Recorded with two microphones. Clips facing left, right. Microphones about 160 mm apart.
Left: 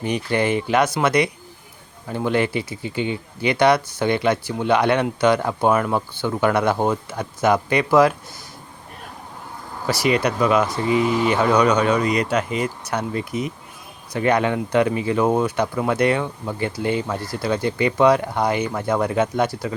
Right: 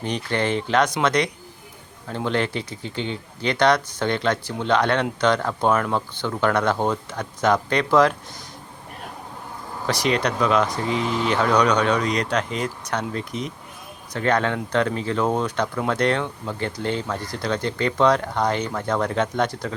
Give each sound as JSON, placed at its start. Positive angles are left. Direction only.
{"t": 0.0, "sound": "speech", "side_deg": 10}
{"t": 9.8, "sound": "speech", "side_deg": 5}